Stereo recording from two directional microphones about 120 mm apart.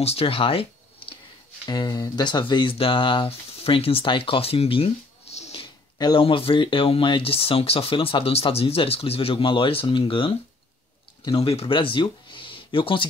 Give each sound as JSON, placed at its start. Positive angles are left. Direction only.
{"t": 0.0, "sound": "speech", "side_deg": 55}
{"t": 1.7, "sound": "speech", "side_deg": 35}
{"t": 5.6, "sound": "a sound", "side_deg": 40}
{"t": 6.2, "sound": "speech", "side_deg": 50}
{"t": 11.3, "sound": "speech", "side_deg": 50}